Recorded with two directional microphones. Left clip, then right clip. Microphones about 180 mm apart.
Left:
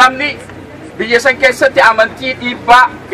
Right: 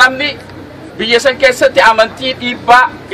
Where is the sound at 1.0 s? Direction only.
50° right (ahead or behind).